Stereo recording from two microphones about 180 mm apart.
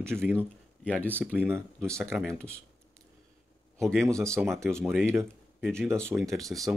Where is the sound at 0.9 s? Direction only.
10° left (ahead or behind).